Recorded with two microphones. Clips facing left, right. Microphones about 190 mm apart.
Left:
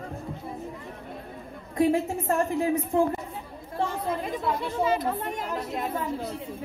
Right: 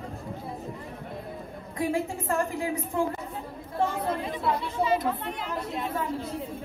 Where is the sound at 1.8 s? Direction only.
20° left (ahead or behind).